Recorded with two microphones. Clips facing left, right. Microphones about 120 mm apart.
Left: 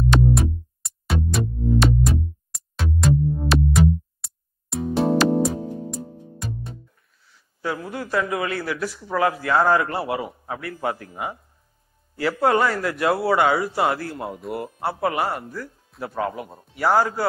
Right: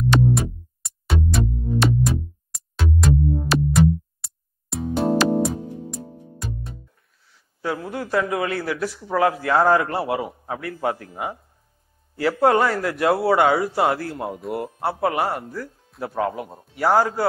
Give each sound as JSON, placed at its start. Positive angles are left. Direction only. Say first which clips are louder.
{"t": 0.1, "sound": "music", "louder": "right 2 dB", "side_deg": 0}
{"t": 7.6, "sound": "a man's voice", "louder": "right 1 dB", "side_deg": -40}
{"t": 10.3, "sound": "a man's voice", "louder": "right 2 dB", "side_deg": -30}
{"t": 10.6, "sound": "a man's voice", "louder": "right 2 dB", "side_deg": -40}
{"t": 14.1, "sound": "a man's voice", "louder": "right 2 dB", "side_deg": -20}
{"t": 16.0, "sound": "a man's voice", "louder": "right 2 dB", "side_deg": -25}